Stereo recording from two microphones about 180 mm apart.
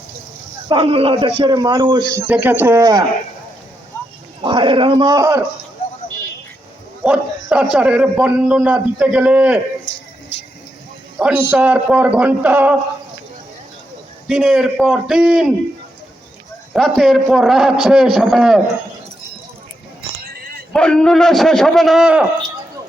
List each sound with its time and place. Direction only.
0.7 s speech: 30° right (ahead or behind)
4.4 s speech: 25° right (ahead or behind)
7.0 s a man's voice: 5° right (ahead or behind)
11.2 s a man's voice: 5° right (ahead or behind)
14.3 s a man's voice: 5° right (ahead or behind)
16.7 s a man's voice: centre (ahead or behind)
20.7 s a man's voice: 5° left (ahead or behind)